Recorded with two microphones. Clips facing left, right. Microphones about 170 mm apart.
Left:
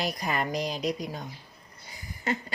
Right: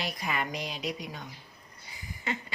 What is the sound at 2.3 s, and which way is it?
Speech, 40° left (ahead or behind).